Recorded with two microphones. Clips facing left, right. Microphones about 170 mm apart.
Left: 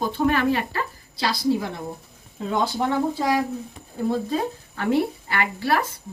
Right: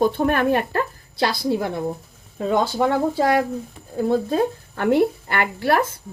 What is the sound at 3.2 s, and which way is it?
Speech, 65° right (ahead or behind).